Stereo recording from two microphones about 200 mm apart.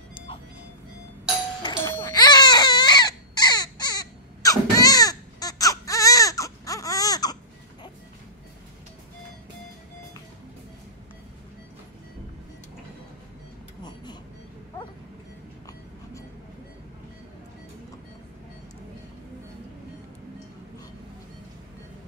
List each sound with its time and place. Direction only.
1.6 s music: 20° left (ahead or behind)
2.0 s baby cry: 20° left (ahead or behind)